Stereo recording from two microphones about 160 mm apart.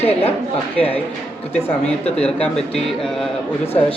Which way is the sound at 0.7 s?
10° left (ahead or behind).